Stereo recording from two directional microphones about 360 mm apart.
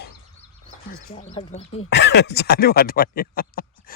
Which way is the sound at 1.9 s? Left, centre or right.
Left.